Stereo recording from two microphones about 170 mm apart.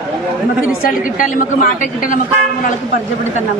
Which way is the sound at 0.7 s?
55° left (ahead or behind).